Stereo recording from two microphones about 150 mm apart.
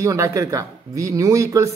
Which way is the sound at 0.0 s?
20° right (ahead or behind).